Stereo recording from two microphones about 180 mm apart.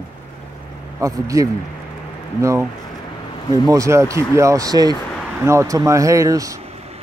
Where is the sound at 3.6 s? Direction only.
20° right (ahead or behind).